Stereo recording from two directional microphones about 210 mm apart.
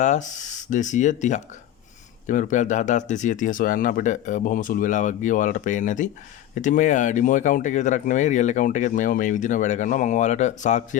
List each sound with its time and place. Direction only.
0.0 s speech: 35° left (ahead or behind)